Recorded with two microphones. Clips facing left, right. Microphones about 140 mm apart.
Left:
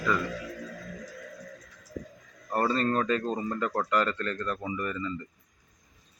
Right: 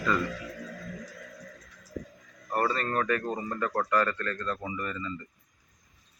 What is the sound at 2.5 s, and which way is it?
Speech, 25° left (ahead or behind).